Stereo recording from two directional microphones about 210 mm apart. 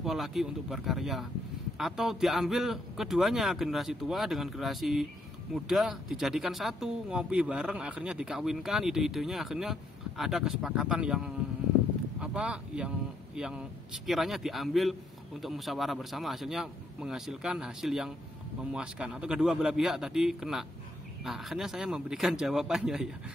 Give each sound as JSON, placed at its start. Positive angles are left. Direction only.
{"t": 0.0, "sound": "speech", "side_deg": 0}